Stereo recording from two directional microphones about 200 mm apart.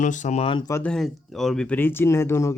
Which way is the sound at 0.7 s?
10° left (ahead or behind).